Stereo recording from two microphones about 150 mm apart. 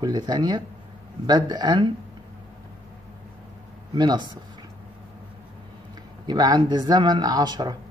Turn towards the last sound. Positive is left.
turn(degrees=-30)  # may be behind; listen again after turning